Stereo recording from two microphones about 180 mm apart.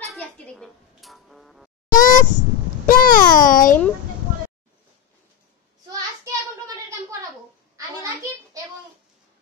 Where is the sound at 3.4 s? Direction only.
50° left (ahead or behind).